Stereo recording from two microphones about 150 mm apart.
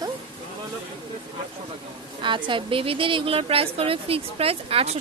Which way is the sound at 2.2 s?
35° right (ahead or behind).